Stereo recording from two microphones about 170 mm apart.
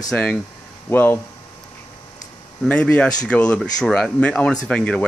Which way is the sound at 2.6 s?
5° left (ahead or behind).